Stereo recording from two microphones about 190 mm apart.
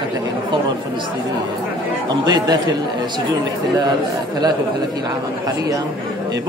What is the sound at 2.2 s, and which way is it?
Speech, 20° right (ahead or behind).